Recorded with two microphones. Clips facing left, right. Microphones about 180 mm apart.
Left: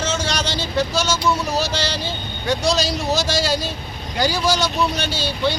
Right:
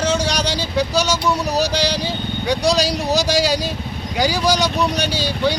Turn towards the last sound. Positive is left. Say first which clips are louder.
# right 2 dB
turn(degrees=-15)  # may be behind; listen again after turning